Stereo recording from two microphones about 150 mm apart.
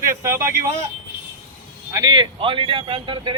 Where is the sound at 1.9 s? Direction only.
30° right (ahead or behind).